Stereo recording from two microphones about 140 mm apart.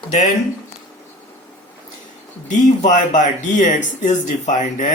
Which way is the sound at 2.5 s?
65° left (ahead or behind).